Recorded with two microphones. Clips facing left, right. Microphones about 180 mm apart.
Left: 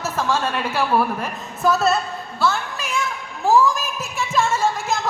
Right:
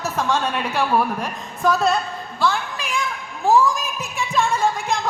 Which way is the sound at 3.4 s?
Centre (ahead or behind).